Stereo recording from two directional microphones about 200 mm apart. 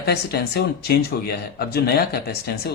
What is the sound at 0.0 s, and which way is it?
Speech, 55° left (ahead or behind).